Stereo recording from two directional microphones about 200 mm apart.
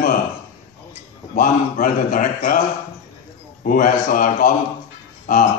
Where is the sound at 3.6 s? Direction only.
45° left (ahead or behind).